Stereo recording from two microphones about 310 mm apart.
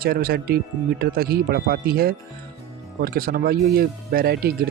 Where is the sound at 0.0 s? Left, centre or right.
Right.